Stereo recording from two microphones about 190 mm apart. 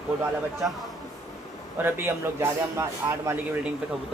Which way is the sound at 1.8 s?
15° right (ahead or behind).